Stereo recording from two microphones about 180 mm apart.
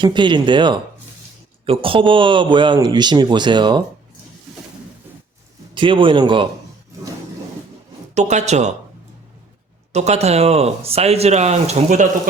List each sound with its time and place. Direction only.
0.0 s a man's voice: 25° right (ahead or behind)
5.7 s a man's voice: 30° right (ahead or behind)
8.1 s speech: 40° right (ahead or behind)
9.9 s speech: 35° right (ahead or behind)